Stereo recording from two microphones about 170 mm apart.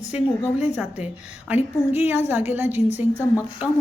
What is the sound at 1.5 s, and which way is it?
A woman's voice, 10° right (ahead or behind).